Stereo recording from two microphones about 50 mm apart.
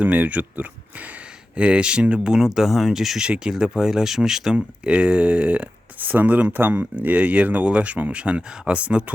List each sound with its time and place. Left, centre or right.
0.0 s speech: right
1.5 s speech: right; by 3.2 s centre
3.2 s speech: centre
4.5 s speech: right